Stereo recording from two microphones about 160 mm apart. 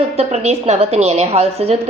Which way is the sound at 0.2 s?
40° right (ahead or behind).